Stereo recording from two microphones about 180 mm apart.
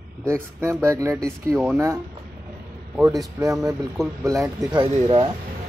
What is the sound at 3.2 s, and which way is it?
Speech, 20° right (ahead or behind).